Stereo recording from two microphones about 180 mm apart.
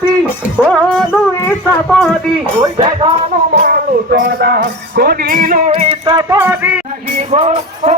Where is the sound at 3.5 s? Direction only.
45° right (ahead or behind).